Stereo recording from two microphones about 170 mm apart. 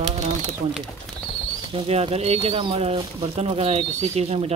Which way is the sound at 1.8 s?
35° right (ahead or behind).